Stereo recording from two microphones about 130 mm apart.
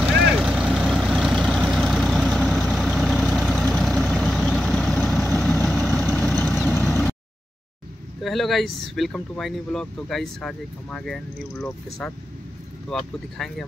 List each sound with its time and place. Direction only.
0.0 s vehicle: 5° right (ahead or behind)
6.9 s a sound: 15° left (ahead or behind)
8.2 s speech: centre (ahead or behind)
13.4 s speech: 5° left (ahead or behind)